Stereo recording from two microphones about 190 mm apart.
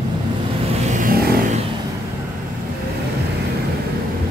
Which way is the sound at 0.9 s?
45° right (ahead or behind).